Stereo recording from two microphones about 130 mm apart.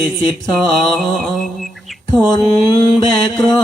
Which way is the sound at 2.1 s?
30° left (ahead or behind).